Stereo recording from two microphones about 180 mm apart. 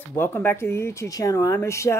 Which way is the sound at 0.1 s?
10° left (ahead or behind).